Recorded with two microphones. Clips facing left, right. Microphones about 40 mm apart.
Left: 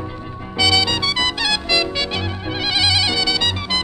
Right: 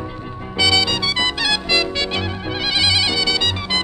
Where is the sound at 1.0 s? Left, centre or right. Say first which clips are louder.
Even; centre.